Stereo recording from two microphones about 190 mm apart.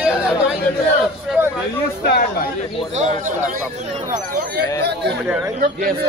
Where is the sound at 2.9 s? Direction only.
40° right (ahead or behind).